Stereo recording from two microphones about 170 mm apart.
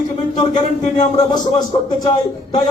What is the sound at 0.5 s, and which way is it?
Speech, 45° left (ahead or behind).